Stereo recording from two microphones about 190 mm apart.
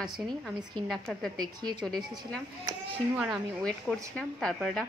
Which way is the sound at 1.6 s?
20° right (ahead or behind).